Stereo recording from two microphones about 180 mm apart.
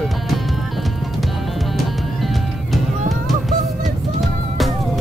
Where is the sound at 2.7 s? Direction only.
Centre (ahead or behind).